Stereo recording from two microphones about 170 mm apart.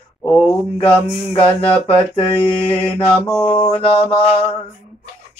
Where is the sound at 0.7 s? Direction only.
35° left (ahead or behind).